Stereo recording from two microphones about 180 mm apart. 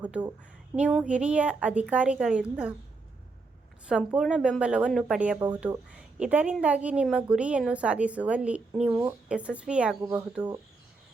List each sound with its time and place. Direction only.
0.0 s a woman's voice: 5° right (ahead or behind)
3.8 s a woman's voice: 5° right (ahead or behind)
10.0 s a woman's voice: 15° right (ahead or behind)